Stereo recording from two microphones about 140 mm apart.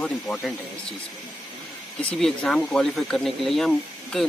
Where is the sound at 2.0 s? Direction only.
5° left (ahead or behind).